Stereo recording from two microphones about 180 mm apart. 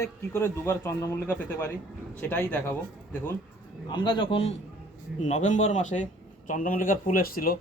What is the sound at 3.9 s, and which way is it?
A man's voice, 25° left (ahead or behind).